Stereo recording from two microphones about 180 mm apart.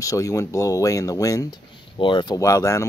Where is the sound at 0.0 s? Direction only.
20° left (ahead or behind).